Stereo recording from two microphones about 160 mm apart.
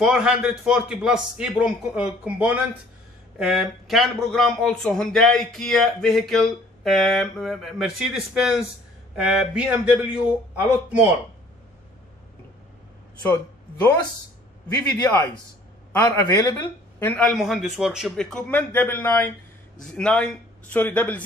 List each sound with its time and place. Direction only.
0.0 s a man's voice: 5° right (ahead or behind)
15.0 s a man's voice: 15° left (ahead or behind)